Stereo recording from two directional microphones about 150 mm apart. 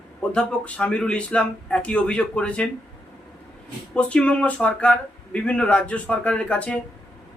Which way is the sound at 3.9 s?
10° left (ahead or behind).